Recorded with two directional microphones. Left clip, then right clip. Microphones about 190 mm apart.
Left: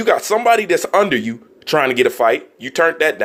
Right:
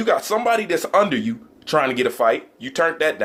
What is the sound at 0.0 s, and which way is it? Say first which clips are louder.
Speech: left 4 dB; 40° left (ahead or behind).